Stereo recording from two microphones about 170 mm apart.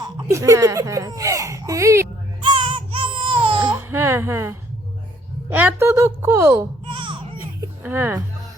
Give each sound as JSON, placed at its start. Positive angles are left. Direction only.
{"t": 0.0, "sound": "speech", "side_deg": -20}
{"t": 2.4, "sound": "music", "side_deg": -30}
{"t": 3.6, "sound": "baby cry", "side_deg": -10}
{"t": 5.5, "sound": "a woman's voice", "side_deg": -10}
{"t": 6.8, "sound": "baby cry", "side_deg": -30}
{"t": 7.3, "sound": "music", "side_deg": -15}